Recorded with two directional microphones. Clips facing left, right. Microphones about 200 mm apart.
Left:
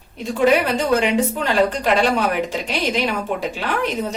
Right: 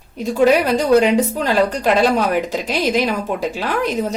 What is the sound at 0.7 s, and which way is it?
A woman's voice, 40° right (ahead or behind).